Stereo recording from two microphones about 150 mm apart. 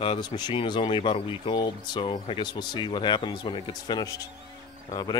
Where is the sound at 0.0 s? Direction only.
30° left (ahead or behind).